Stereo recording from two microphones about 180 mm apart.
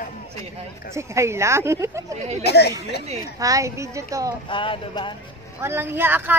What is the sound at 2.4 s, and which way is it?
Speech, 65° left (ahead or behind).